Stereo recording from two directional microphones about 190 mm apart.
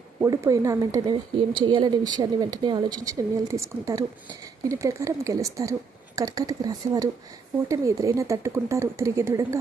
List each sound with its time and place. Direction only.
0.2 s speech: 15° right (ahead or behind)